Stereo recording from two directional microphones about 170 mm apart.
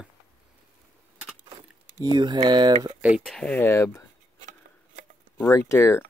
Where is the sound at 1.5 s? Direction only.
25° right (ahead or behind).